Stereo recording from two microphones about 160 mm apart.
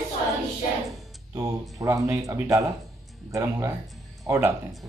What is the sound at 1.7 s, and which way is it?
Speech, 20° right (ahead or behind).